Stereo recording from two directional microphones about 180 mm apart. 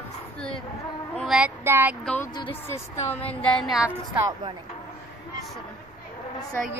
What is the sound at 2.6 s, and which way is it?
Speech, 15° left (ahead or behind).